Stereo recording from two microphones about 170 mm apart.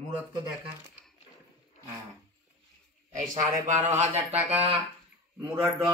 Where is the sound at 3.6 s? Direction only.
45° right (ahead or behind).